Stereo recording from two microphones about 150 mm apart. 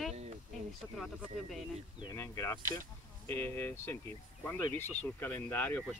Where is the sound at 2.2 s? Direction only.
20° left (ahead or behind).